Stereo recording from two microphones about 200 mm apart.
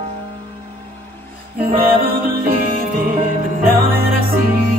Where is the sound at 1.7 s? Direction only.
45° right (ahead or behind).